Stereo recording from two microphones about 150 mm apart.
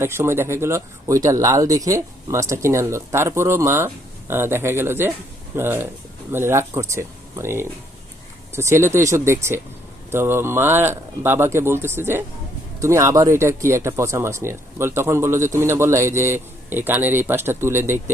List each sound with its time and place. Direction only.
0.0 s speech: 15° right (ahead or behind)